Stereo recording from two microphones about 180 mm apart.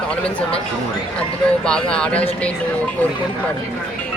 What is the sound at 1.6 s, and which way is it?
Speech, 5° left (ahead or behind).